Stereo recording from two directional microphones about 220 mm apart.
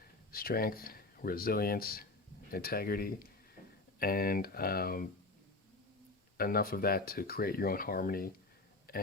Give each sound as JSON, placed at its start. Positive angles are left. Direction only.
{"t": 0.3, "sound": "speech", "side_deg": 40}
{"t": 6.3, "sound": "speech", "side_deg": 40}